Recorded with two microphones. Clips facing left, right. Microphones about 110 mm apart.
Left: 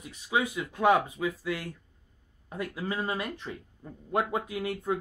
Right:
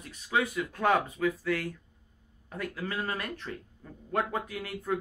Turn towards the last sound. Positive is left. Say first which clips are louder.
# left 2 dB
turn(degrees=20)  # may be behind; listen again after turning